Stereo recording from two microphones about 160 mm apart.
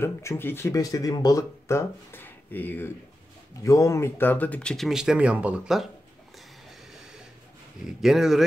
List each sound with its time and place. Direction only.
0.0 s speech: 15° left (ahead or behind); by 5.9 s 5° right (ahead or behind)
7.8 s speech: centre (ahead or behind)